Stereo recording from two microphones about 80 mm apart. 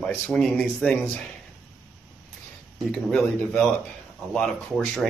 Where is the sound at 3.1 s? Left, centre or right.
Left.